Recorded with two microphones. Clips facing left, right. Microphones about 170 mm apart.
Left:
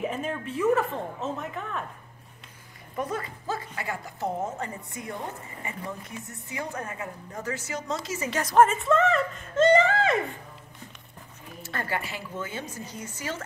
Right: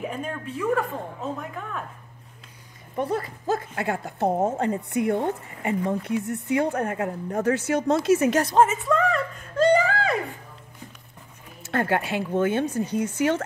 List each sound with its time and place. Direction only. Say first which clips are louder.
0.0 s a woman's voice: even; centre (ahead or behind)
3.0 s speech: right 5 dB; 35° right (ahead or behind)
3.4 s a woman's voice: right 9 dB; 55° right (ahead or behind)
8.7 s speech: even; centre (ahead or behind)
11.7 s a woman's voice: right 9 dB; 60° right (ahead or behind)